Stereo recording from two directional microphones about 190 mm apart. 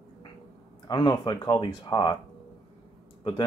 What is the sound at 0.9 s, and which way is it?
Speech, 20° left (ahead or behind).